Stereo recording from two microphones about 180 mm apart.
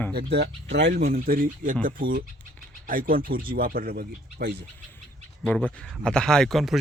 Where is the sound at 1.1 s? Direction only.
50° right (ahead or behind).